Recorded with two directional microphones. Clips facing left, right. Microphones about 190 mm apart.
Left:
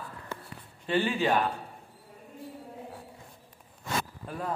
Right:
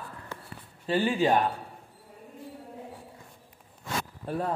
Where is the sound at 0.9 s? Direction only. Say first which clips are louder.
Right 2 dB; 40° right (ahead or behind).